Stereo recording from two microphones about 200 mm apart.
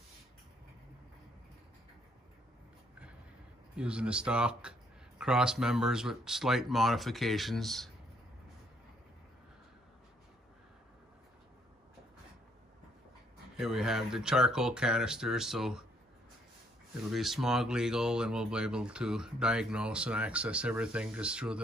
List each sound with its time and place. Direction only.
3.7 s speech: 5° right (ahead or behind)
13.6 s speech: centre (ahead or behind)
16.9 s speech: centre (ahead or behind)